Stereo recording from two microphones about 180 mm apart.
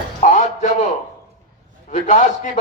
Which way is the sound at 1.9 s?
40° left (ahead or behind).